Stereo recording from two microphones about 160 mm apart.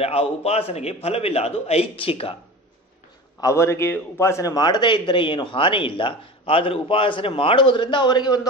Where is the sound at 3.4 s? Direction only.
15° left (ahead or behind).